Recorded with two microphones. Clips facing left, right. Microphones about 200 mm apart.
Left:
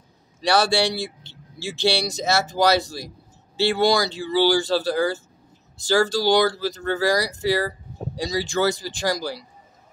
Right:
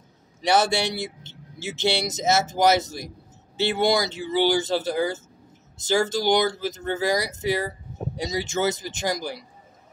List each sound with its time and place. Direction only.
0.4 s speech: 20° right (ahead or behind)